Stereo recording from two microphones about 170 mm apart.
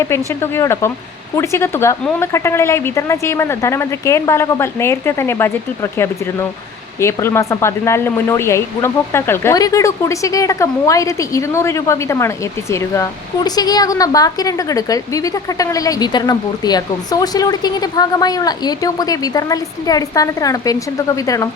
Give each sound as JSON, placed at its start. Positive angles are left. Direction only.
{"t": 0.3, "sound": "speech", "side_deg": 15}